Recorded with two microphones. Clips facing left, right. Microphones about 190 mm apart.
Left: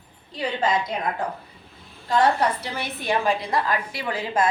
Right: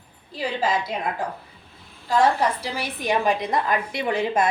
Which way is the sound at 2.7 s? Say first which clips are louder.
Right 1 dB; 15° right (ahead or behind).